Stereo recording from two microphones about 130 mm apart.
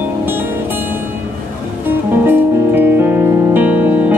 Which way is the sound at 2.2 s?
15° right (ahead or behind).